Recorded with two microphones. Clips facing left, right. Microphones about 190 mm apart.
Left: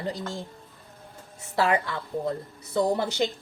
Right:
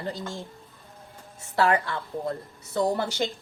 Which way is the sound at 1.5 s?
20° left (ahead or behind).